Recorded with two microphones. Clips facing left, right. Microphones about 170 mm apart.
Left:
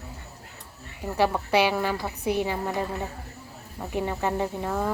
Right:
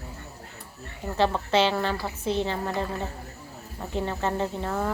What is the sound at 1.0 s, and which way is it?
Speech, 10° left (ahead or behind).